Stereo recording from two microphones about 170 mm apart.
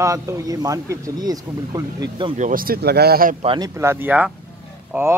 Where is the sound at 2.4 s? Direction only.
55° right (ahead or behind).